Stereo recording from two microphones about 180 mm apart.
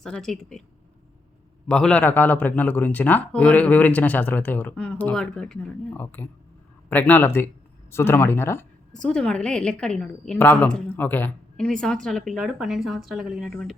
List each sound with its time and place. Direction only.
0.0 s speech: 5° left (ahead or behind)
1.6 s a man's voice: 5° left (ahead or behind)